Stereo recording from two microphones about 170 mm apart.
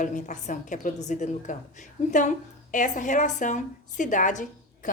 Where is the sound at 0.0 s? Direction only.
50° left (ahead or behind).